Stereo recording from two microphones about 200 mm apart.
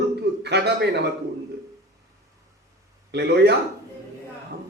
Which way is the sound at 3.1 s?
55° right (ahead or behind).